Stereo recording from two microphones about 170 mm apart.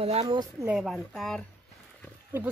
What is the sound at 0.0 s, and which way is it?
Speech, 40° right (ahead or behind).